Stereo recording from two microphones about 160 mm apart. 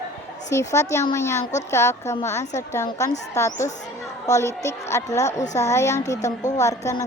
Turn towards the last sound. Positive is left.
turn(degrees=20)  # may be behind; listen again after turning